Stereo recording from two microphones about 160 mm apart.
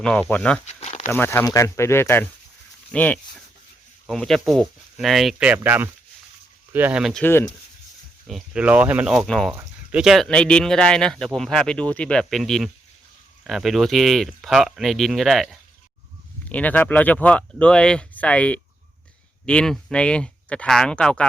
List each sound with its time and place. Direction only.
0.0 s speech: 5° left (ahead or behind)
0.6 s a sound: 45° left (ahead or behind)
1.0 s speech: 15° left (ahead or behind); by 7.2 s 5° right (ahead or behind)
7.2 s speech: 15° left (ahead or behind)
8.3 s speech: 5° right (ahead or behind)